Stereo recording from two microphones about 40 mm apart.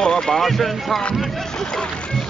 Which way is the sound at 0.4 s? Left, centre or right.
Centre.